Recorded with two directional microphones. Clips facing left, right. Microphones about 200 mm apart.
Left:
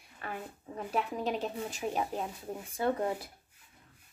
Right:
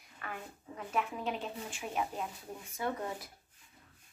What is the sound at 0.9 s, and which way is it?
Speech, 35° left (ahead or behind).